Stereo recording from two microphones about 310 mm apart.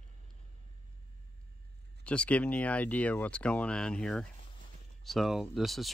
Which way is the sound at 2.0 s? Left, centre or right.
Centre.